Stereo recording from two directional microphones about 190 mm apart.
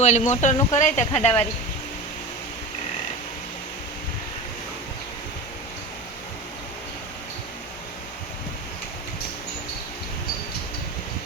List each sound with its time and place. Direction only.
0.0 s speech: 35° left (ahead or behind)